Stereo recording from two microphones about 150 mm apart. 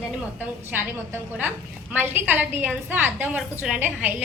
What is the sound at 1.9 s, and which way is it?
A woman's voice, 15° right (ahead or behind).